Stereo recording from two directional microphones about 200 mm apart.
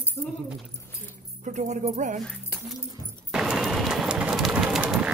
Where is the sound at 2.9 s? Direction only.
15° right (ahead or behind).